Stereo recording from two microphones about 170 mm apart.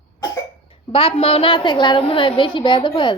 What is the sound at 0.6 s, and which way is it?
A woman's voice, 35° left (ahead or behind).